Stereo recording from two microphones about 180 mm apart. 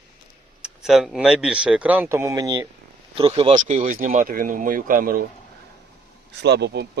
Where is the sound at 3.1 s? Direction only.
30° right (ahead or behind); by 5.2 s 50° right (ahead or behind).